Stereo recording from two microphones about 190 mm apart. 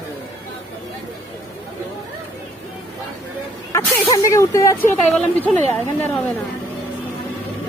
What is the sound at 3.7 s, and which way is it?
Speech, 15° left (ahead or behind).